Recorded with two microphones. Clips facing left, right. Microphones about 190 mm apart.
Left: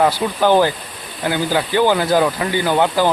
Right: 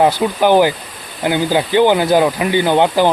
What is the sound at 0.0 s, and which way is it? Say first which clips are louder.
Speech: right 3 dB; 15° right (ahead or behind).